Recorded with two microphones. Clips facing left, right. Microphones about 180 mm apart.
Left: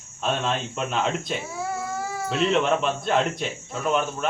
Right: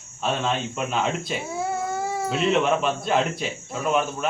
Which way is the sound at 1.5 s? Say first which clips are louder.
Right 3 dB; 25° right (ahead or behind).